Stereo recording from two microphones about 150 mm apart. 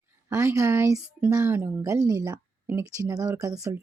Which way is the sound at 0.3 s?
20° right (ahead or behind).